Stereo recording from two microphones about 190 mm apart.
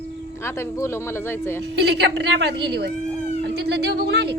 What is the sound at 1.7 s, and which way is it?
A woman's voice, 60° right (ahead or behind).